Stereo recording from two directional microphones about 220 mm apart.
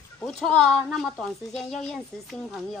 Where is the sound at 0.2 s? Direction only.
Centre (ahead or behind).